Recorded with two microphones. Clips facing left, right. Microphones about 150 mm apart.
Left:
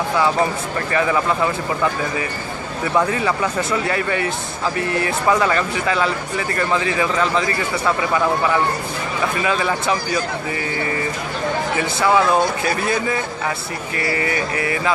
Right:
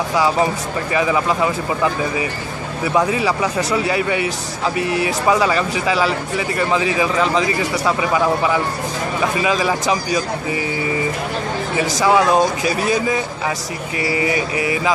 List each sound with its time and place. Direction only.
0.9 s speech: 15° right (ahead or behind)
2.8 s speech: 15° right (ahead or behind)
9.4 s speech: 15° right (ahead or behind)
12.0 s speech: 15° right (ahead or behind)